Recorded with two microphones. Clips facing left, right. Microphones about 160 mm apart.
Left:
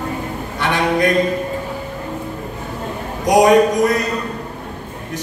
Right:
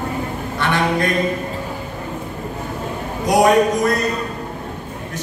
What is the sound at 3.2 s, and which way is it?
Speech, 15° left (ahead or behind).